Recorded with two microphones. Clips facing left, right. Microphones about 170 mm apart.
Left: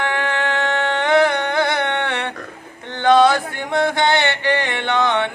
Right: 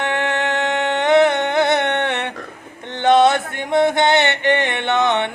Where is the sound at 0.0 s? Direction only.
20° right (ahead or behind).